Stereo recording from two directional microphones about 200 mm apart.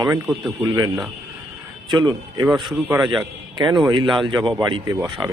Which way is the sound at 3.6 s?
25° right (ahead or behind).